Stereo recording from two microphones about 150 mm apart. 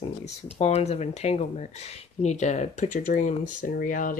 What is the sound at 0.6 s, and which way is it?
Speech, 45° left (ahead or behind).